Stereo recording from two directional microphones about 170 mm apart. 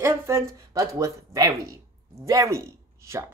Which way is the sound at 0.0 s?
15° right (ahead or behind).